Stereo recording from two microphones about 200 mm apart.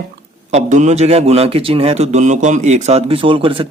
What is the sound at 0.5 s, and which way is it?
A man's voice, 35° right (ahead or behind).